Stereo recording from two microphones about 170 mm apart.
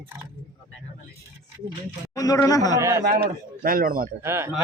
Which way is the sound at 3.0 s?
65° right (ahead or behind).